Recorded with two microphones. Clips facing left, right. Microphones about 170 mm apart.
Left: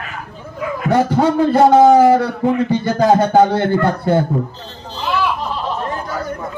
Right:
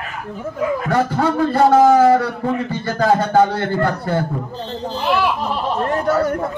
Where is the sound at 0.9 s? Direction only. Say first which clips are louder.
Left 6 dB; 20° left (ahead or behind).